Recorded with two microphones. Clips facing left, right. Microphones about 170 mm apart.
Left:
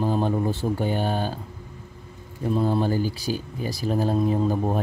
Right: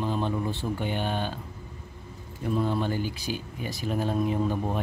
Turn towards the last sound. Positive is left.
turn(degrees=40)  # may be behind; listen again after turning